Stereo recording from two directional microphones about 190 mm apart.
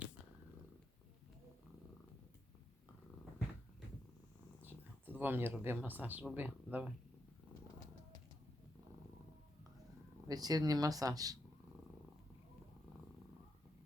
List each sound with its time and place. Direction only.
4.6 s speech: 10° right (ahead or behind)
10.2 s speech: 20° right (ahead or behind)